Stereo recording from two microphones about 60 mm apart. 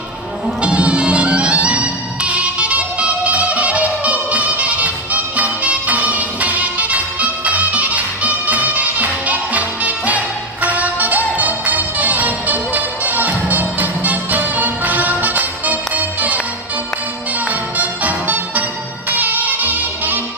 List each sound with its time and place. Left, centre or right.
0.6 s music: centre
17.5 s music: right